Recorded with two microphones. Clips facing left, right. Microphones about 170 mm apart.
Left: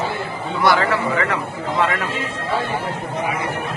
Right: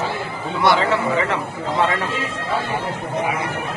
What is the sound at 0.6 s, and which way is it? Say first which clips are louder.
Speech: even; 25° right (ahead or behind).